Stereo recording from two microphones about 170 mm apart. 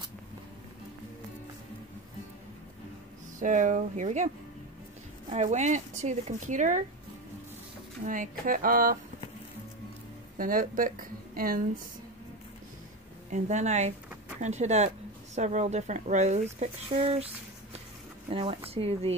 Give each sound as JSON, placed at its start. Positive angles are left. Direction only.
{"t": 3.3, "sound": "speech", "side_deg": -50}
{"t": 5.3, "sound": "speech", "side_deg": -45}
{"t": 8.0, "sound": "speech", "side_deg": -50}
{"t": 10.3, "sound": "a woman's voice", "side_deg": -55}
{"t": 13.3, "sound": "speech", "side_deg": -45}
{"t": 18.3, "sound": "speech", "side_deg": -35}